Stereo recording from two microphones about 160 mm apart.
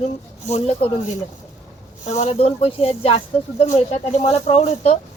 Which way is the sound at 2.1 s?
45° left (ahead or behind).